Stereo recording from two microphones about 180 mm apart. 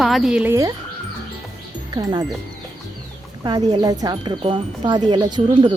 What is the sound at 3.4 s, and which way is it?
Speech, 20° right (ahead or behind).